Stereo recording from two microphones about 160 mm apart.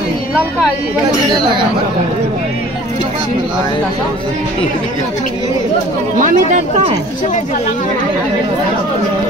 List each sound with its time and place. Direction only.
6.1 s speech: 55° right (ahead or behind)